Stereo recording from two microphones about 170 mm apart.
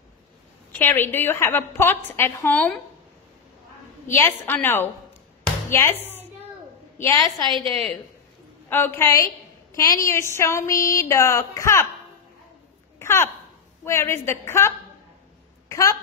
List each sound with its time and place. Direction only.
0.7 s speech: 10° left (ahead or behind)
4.1 s a woman's voice: 10° left (ahead or behind)
7.4 s a woman's voice: 30° right (ahead or behind)
8.6 s speech: 15° left (ahead or behind)
13.0 s a woman's voice: 15° left (ahead or behind)